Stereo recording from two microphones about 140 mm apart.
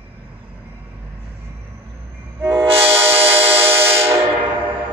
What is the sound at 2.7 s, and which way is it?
Train, 45° right (ahead or behind).